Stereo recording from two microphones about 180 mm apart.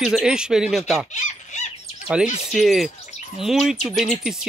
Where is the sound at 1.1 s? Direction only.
40° left (ahead or behind).